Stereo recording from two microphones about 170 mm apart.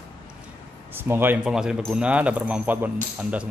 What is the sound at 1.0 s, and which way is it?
Speech, 15° right (ahead or behind).